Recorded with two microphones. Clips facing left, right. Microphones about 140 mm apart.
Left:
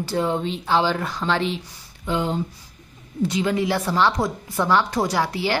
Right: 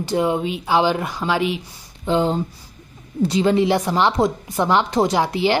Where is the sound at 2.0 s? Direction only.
30° right (ahead or behind).